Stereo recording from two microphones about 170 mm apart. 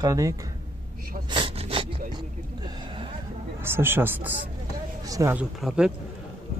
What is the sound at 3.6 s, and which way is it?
Speech, 15° right (ahead or behind).